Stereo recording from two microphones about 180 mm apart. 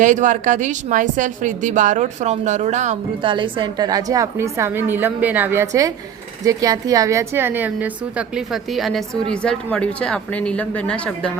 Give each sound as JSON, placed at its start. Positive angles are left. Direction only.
{"t": 0.0, "sound": "a woman's voice", "side_deg": -45}
{"t": 3.2, "sound": "a woman's voice", "side_deg": -25}